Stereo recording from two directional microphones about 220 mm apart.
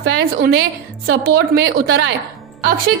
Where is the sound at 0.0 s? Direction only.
45° right (ahead or behind).